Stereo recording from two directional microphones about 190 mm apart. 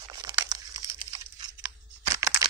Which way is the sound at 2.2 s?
15° right (ahead or behind).